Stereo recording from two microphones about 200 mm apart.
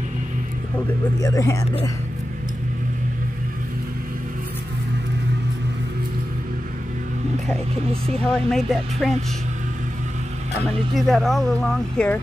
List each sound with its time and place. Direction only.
1.2 s speech: 15° left (ahead or behind)
7.4 s speech: 5° left (ahead or behind)
11.0 s speech: centre (ahead or behind)